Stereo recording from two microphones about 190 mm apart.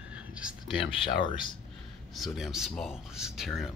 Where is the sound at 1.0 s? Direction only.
25° left (ahead or behind).